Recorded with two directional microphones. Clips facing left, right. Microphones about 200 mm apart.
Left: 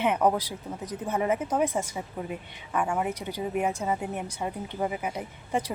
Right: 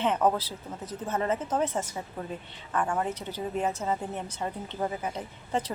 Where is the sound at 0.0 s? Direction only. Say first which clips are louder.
Left 1 dB; 10° left (ahead or behind).